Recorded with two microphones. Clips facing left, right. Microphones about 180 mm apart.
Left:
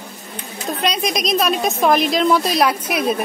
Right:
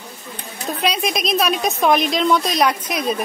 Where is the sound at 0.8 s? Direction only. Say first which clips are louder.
Even; 5° right (ahead or behind).